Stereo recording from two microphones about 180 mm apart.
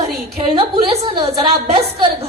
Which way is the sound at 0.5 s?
35° right (ahead or behind).